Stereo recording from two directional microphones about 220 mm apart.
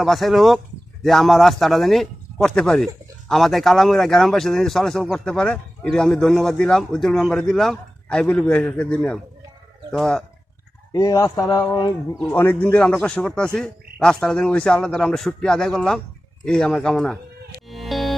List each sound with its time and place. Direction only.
0.0 s a man's voice: centre (ahead or behind)
10.9 s a man's voice: 15° left (ahead or behind)
17.7 s music: centre (ahead or behind)